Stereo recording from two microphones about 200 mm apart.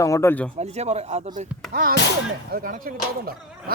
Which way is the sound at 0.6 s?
35° right (ahead or behind).